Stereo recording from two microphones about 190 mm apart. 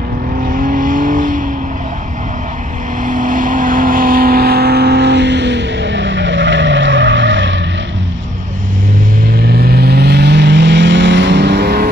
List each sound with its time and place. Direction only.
0.5 s vehicle: 45° right (ahead or behind)
3.1 s vehicle: 45° right (ahead or behind); by 7.6 s 75° right (ahead or behind)
9.5 s vehicle: 55° right (ahead or behind)